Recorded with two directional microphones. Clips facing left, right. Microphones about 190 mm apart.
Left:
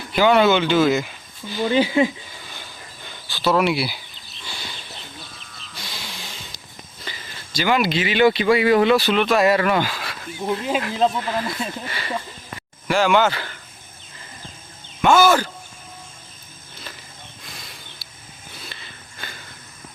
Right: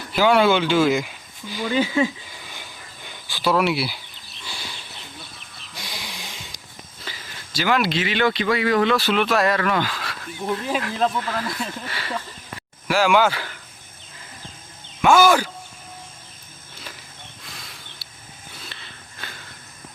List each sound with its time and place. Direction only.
0.1 s speech: 5° right (ahead or behind)
1.6 s speech: 30° left (ahead or behind)
2.5 s a sound: 15° right (ahead or behind)
3.5 s speech: centre (ahead or behind)
4.4 s bird: centre (ahead or behind)
5.8 s a sound: 15° right (ahead or behind)
7.0 s speech: 5° right (ahead or behind)
9.0 s speech: 5° right (ahead or behind)
9.6 s speech: 15° left (ahead or behind)
11.9 s speech: centre (ahead or behind)
15.0 s speech: 10° right (ahead or behind)
18.7 s a sound: 5° left (ahead or behind)